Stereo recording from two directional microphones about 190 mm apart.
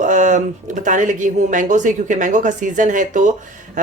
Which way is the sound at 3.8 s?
40° right (ahead or behind).